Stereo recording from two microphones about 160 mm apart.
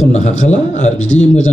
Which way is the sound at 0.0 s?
45° left (ahead or behind).